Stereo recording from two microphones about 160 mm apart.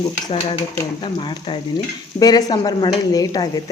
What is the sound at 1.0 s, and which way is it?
Speech, 35° left (ahead or behind).